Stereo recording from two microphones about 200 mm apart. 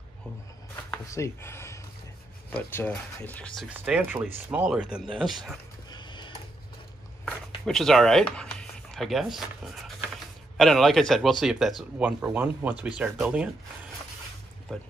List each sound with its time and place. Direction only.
0.8 s speech: 10° left (ahead or behind)
3.6 s speech: 5° right (ahead or behind)
5.9 s a sound: 20° left (ahead or behind)
7.2 s speech: 5° left (ahead or behind)
14.7 s speech: centre (ahead or behind)